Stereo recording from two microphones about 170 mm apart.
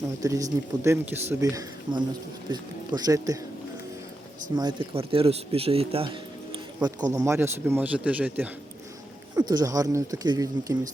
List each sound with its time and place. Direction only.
0.2 s speech: 20° right (ahead or behind)
4.5 s a man's voice: 25° right (ahead or behind)
6.8 s a man's voice: 20° right (ahead or behind)
9.3 s speech: 25° right (ahead or behind)